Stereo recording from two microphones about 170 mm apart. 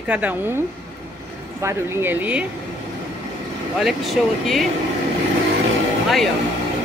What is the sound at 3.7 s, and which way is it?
Speech, centre (ahead or behind).